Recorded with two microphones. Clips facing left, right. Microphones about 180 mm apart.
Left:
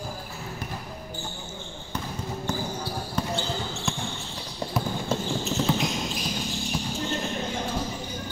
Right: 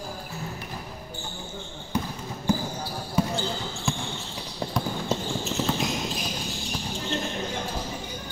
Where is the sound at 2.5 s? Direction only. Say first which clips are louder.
Right 6 dB; 10° right (ahead or behind).